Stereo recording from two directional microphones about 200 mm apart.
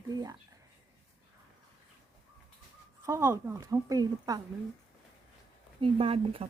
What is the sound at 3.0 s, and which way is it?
A woman's voice, 15° right (ahead or behind).